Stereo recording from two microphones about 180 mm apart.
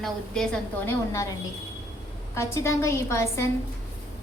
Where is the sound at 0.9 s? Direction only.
15° left (ahead or behind).